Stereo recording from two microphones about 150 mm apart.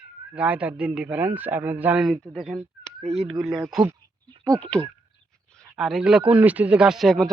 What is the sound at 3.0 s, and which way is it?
Speech, 45° right (ahead or behind).